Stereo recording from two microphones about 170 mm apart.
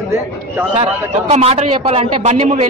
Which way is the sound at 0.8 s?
40° right (ahead or behind).